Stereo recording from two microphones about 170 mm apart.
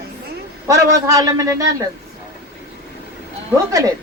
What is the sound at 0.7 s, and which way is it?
Speech, 20° right (ahead or behind).